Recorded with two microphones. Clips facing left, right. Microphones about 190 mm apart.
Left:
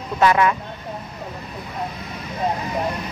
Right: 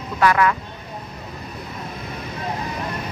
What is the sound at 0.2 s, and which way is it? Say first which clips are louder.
Speech: left 1 dB; 20° left (ahead or behind).